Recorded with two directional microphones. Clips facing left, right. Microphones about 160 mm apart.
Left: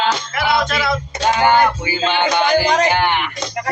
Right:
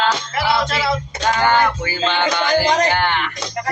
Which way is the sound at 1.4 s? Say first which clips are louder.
Left 2 dB; 15° left (ahead or behind).